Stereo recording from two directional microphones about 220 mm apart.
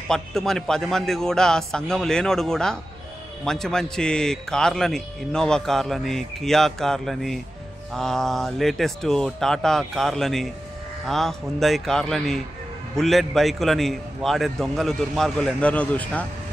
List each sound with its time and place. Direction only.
0.1 s a man's voice: centre (ahead or behind)